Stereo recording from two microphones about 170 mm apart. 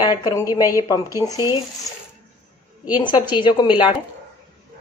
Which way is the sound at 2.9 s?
25° left (ahead or behind).